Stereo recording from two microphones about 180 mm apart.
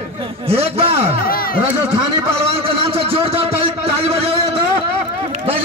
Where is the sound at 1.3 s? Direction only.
55° left (ahead or behind).